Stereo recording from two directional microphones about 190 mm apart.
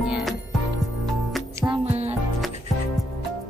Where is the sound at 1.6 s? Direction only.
25° right (ahead or behind).